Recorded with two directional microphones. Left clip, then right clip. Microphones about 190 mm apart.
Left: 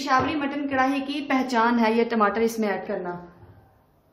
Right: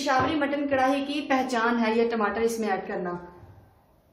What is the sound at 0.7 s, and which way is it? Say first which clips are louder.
A woman's voice: left 2 dB; 40° left (ahead or behind).